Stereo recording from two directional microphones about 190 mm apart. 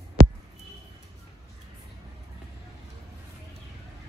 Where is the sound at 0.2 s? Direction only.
50° right (ahead or behind).